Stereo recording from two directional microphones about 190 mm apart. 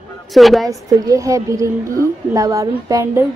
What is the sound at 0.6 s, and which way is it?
A woman's voice, 20° right (ahead or behind).